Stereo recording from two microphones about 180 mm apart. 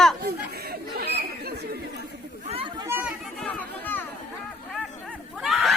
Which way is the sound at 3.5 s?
10° left (ahead or behind).